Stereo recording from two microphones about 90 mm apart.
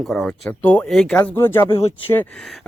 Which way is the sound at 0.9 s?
5° left (ahead or behind).